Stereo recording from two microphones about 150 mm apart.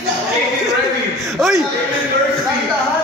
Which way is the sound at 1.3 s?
Centre (ahead or behind).